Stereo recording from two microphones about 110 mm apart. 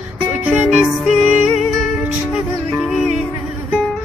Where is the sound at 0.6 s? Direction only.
5° right (ahead or behind).